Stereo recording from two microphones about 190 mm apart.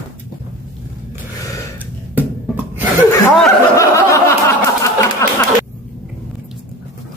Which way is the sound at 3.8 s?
15° left (ahead or behind).